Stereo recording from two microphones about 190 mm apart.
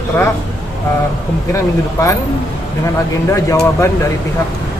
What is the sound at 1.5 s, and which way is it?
Speech, 15° left (ahead or behind).